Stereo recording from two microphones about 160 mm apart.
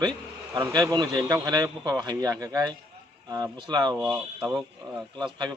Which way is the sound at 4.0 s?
10° right (ahead or behind).